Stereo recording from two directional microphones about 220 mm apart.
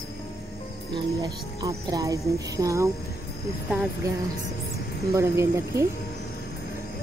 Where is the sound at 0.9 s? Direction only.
20° right (ahead or behind).